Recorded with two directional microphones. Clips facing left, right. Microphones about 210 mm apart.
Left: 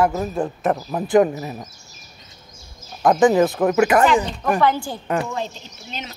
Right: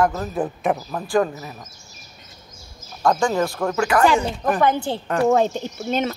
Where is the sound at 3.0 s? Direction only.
20° left (ahead or behind).